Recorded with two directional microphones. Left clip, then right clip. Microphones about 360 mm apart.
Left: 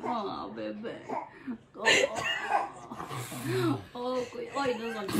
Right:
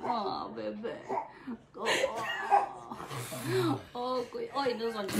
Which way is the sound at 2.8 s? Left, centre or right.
Centre.